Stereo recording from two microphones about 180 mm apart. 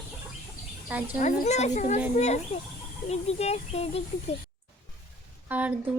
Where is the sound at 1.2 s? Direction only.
40° left (ahead or behind).